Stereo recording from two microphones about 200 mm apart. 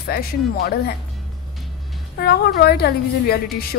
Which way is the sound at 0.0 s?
50° left (ahead or behind).